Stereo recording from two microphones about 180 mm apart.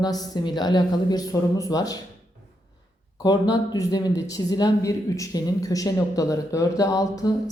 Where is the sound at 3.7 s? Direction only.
20° left (ahead or behind).